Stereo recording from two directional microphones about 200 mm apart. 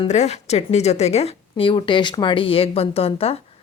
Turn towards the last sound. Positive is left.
turn(degrees=30)  # may be behind; listen again after turning